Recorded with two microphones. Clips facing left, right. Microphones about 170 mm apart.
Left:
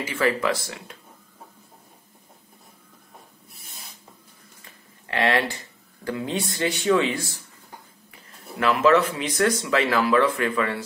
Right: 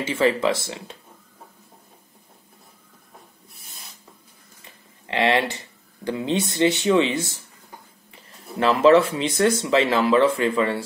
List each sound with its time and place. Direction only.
0.0 s speech: 25° right (ahead or behind)
5.0 s speech: 25° right (ahead or behind)
8.5 s speech: 30° right (ahead or behind)